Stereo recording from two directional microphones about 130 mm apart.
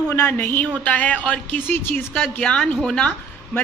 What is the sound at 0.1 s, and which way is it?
A woman's voice, 15° left (ahead or behind).